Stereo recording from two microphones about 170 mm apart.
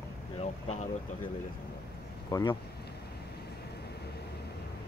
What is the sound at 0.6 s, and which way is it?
Speech, 45° left (ahead or behind).